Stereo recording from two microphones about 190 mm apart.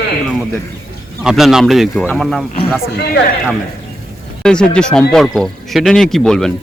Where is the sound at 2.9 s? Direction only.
55° left (ahead or behind).